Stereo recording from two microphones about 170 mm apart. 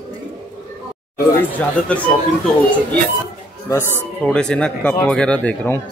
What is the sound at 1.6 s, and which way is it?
Speech, 10° left (ahead or behind).